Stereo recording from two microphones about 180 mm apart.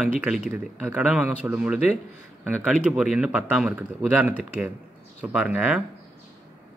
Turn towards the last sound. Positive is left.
turn(degrees=-5)  # may be behind; listen again after turning